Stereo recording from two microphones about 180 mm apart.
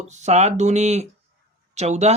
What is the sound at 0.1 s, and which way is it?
Speech, 40° right (ahead or behind).